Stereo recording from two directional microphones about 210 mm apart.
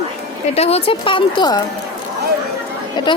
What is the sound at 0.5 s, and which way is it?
Speech, 30° left (ahead or behind).